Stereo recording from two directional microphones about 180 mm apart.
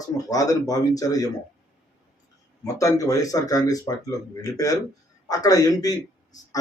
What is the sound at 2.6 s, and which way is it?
Speech, 20° left (ahead or behind).